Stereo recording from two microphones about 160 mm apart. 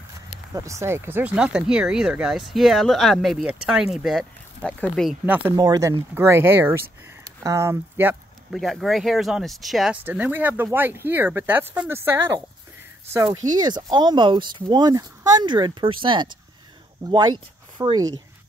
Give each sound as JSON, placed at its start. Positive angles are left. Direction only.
{"t": 0.6, "sound": "speech", "side_deg": -20}
{"t": 5.2, "sound": "speech", "side_deg": -10}
{"t": 5.6, "sound": "speech", "side_deg": -20}
{"t": 8.5, "sound": "speech", "side_deg": 0}
{"t": 10.0, "sound": "speech", "side_deg": -10}
{"t": 13.3, "sound": "speech", "side_deg": -25}